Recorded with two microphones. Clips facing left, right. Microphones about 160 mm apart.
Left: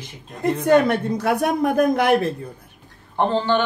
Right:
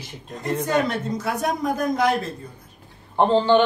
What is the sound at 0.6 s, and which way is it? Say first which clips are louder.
Speech: left 7 dB; 60° left (ahead or behind).